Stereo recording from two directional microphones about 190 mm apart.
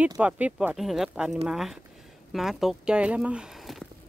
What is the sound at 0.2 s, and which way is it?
A woman's voice, 5° right (ahead or behind).